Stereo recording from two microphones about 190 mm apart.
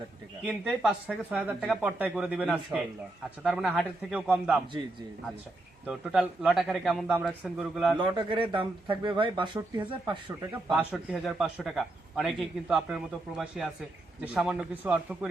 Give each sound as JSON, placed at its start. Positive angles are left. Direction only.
{"t": 0.4, "sound": "speech", "side_deg": -5}
{"t": 5.8, "sound": "speech", "side_deg": -5}
{"t": 7.9, "sound": "a man's voice", "side_deg": -25}
{"t": 10.5, "sound": "speech", "side_deg": -5}